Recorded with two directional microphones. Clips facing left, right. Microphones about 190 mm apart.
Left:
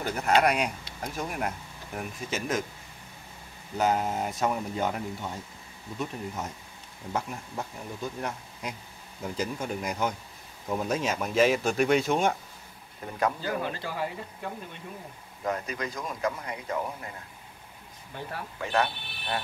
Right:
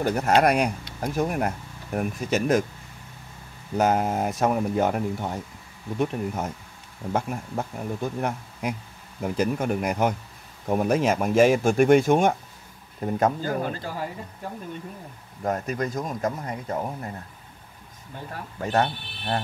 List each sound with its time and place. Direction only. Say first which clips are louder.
0.0 s speech: right 4 dB; 40° right (ahead or behind); by 2.6 s 55° right (ahead or behind)
3.7 s speech: right 4 dB; 50° right (ahead or behind)
15.4 s speech: right 5 dB; 45° right (ahead or behind)
18.6 s speech: right 4 dB; 40° right (ahead or behind)